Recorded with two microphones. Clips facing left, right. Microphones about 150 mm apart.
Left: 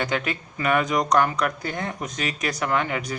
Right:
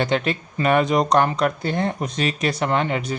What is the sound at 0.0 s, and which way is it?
Speech, 30° right (ahead or behind).